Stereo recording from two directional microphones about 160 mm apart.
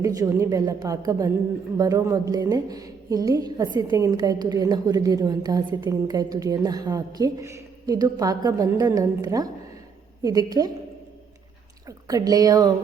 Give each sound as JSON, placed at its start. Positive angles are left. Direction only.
{"t": 0.0, "sound": "a woman's voice", "side_deg": -20}
{"t": 11.9, "sound": "a woman's voice", "side_deg": -20}